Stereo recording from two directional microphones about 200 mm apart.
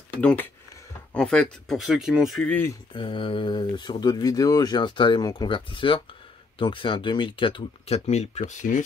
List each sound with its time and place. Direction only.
0.2 s speech: 5° left (ahead or behind)
2.9 s speech: 25° left (ahead or behind)